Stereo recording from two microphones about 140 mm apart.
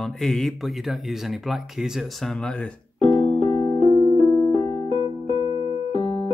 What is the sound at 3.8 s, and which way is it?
Keyboard, 35° right (ahead or behind).